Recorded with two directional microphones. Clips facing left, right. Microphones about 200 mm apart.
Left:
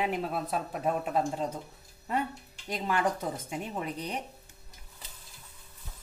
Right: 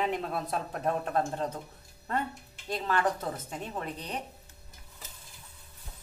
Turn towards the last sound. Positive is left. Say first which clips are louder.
# left 2 dB
turn(degrees=10)  # may be behind; listen again after turning